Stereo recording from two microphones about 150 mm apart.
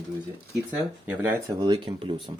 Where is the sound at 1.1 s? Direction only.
10° right (ahead or behind).